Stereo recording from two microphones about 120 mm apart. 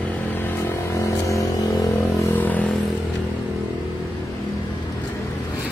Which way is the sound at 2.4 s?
15° left (ahead or behind).